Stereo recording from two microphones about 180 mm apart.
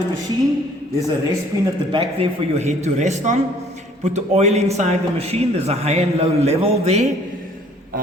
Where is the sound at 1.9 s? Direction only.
35° right (ahead or behind).